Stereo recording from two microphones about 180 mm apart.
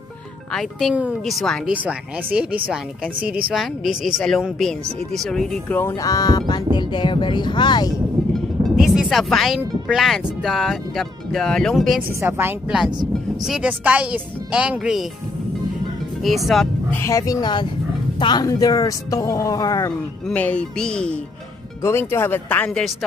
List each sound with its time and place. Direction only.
0.5 s speech: centre (ahead or behind); by 7.9 s 25° left (ahead or behind)
8.9 s speech: centre (ahead or behind)
12.1 s speech: 15° right (ahead or behind)
16.2 s speech: centre (ahead or behind)
16.9 s speech: 15° left (ahead or behind)
20.2 s speech: 10° left (ahead or behind)